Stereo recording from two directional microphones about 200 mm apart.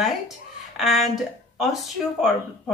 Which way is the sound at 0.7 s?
Centre (ahead or behind).